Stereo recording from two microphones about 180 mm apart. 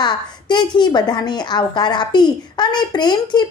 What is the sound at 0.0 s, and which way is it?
A woman's voice, 25° left (ahead or behind).